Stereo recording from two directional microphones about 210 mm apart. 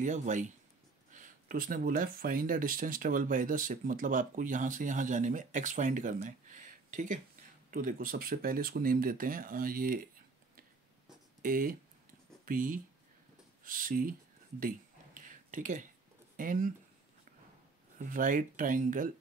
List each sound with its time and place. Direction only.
0.0 s speech: 35° right (ahead or behind)
11.4 s speech: 40° right (ahead or behind)
15.1 s a sound: 40° right (ahead or behind)
16.3 s speech: 40° right (ahead or behind)
17.9 s speech: 40° right (ahead or behind)